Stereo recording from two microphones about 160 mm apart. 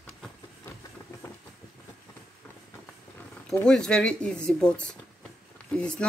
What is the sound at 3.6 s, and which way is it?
Speech, 5° left (ahead or behind).